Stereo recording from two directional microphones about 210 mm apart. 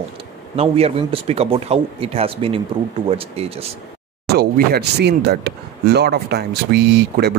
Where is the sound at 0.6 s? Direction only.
30° right (ahead or behind).